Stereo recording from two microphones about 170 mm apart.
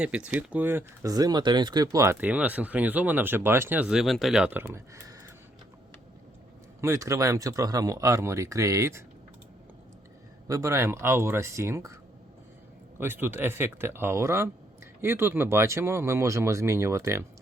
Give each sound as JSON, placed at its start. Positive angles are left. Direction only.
{"t": 0.0, "sound": "speech", "side_deg": -5}
{"t": 6.8, "sound": "speech", "side_deg": -20}
{"t": 10.5, "sound": "speech", "side_deg": -15}
{"t": 13.0, "sound": "speech", "side_deg": -15}